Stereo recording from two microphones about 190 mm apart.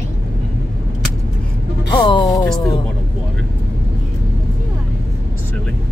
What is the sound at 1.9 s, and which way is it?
Music, 25° left (ahead or behind).